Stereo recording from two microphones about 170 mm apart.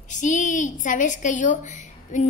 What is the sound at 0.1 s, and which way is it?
A woman's voice, 45° left (ahead or behind).